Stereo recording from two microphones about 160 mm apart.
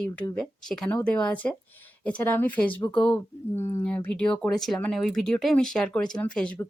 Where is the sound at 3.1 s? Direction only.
15° left (ahead or behind).